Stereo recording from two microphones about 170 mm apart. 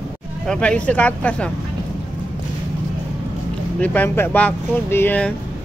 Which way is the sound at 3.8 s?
10° left (ahead or behind).